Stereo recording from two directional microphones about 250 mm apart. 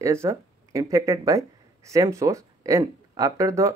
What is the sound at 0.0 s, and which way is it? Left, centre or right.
Speech, centre.